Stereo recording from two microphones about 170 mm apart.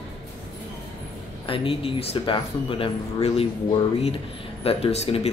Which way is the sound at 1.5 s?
30° left (ahead or behind).